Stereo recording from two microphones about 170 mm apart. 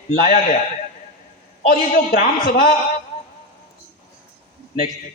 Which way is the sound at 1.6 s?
55° left (ahead or behind).